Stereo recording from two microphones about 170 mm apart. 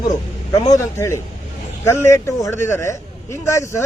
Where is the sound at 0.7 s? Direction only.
15° left (ahead or behind).